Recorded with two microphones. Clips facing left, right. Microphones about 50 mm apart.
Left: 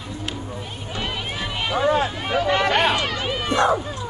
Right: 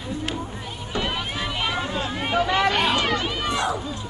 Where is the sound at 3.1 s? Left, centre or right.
Centre.